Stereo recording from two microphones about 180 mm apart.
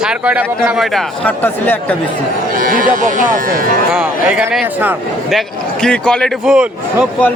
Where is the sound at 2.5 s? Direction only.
50° right (ahead or behind).